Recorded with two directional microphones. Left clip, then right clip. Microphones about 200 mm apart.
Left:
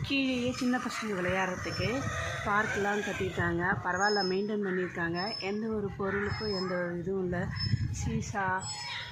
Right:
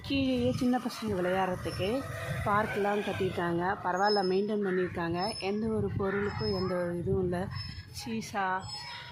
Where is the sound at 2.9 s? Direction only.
35° right (ahead or behind); by 6.8 s 15° right (ahead or behind).